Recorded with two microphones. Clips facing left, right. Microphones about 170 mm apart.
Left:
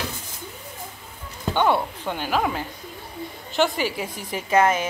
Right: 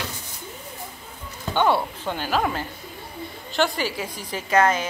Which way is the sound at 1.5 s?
10° left (ahead or behind).